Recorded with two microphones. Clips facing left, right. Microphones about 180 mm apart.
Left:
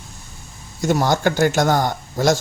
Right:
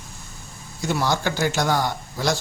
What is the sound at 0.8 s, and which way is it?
Speech, 45° left (ahead or behind).